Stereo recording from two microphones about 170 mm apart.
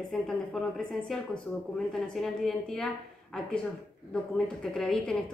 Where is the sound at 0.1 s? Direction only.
Centre (ahead or behind).